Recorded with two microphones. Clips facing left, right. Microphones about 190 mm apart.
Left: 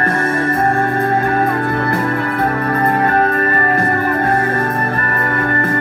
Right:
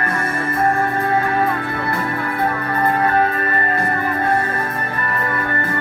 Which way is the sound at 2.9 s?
40° left (ahead or behind).